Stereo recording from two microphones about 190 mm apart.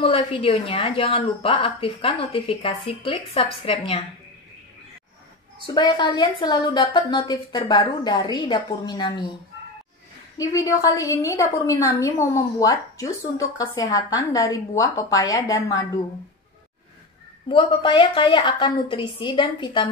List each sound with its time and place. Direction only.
0.0 s speech: 30° left (ahead or behind)
5.8 s speech: 20° left (ahead or behind)
10.3 s a woman's voice: 20° left (ahead or behind)
17.5 s speech: 25° left (ahead or behind)